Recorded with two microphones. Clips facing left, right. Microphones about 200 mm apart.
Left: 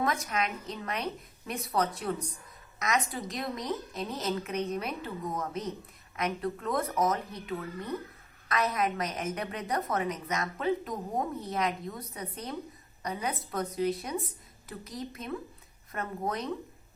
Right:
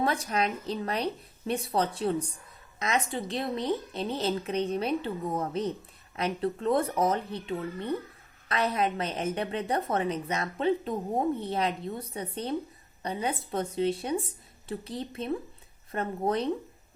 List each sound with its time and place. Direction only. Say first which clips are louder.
0.0 s a woman's voice: right 3 dB; 30° right (ahead or behind)